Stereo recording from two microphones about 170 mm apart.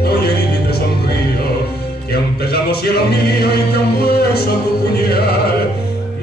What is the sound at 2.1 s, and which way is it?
A capella, 65° left (ahead or behind).